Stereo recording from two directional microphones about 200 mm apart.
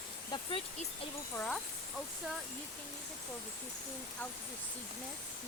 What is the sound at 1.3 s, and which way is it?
Speech, 5° left (ahead or behind).